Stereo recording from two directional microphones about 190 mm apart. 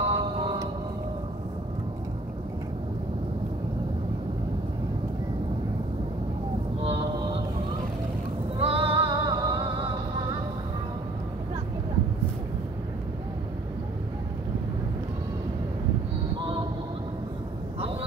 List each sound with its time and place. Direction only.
0.0 s music: 25° right (ahead or behind)
6.8 s a sound: 30° right (ahead or behind)
8.5 s music: 30° right (ahead or behind)